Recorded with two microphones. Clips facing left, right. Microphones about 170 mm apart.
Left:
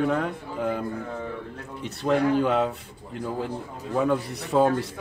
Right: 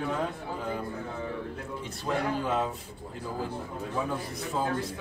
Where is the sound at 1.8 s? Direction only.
65° left (ahead or behind).